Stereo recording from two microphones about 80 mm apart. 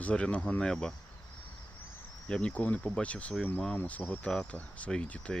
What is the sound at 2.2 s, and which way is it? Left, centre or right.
Speech, centre.